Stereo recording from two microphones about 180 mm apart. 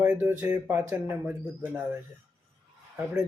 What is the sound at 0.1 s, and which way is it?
Speech, 10° right (ahead or behind).